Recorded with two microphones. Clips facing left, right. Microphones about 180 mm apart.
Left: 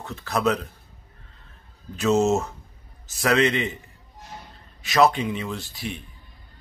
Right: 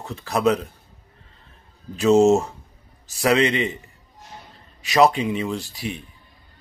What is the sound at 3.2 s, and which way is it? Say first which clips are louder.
Speech: right 2 dB; centre (ahead or behind).